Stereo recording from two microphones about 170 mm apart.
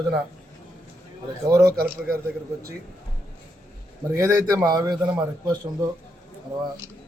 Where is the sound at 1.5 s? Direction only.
20° right (ahead or behind).